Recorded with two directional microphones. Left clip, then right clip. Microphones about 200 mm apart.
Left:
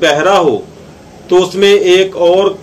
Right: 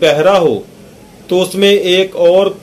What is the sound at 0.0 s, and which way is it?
Speech, 45° right (ahead or behind).